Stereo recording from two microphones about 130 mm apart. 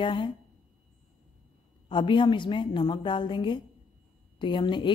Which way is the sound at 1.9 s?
40° left (ahead or behind).